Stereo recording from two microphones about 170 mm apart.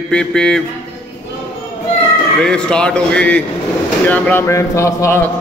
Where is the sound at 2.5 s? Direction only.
5° left (ahead or behind).